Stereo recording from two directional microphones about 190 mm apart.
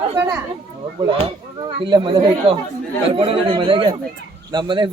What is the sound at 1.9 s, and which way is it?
Speech, 25° right (ahead or behind).